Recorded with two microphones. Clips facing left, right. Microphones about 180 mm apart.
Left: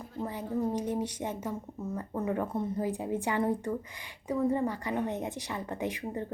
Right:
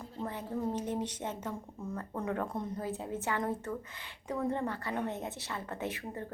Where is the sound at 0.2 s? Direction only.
10° left (ahead or behind).